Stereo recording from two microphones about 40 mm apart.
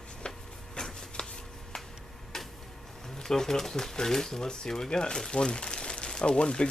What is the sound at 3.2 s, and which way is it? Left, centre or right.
Speech, centre.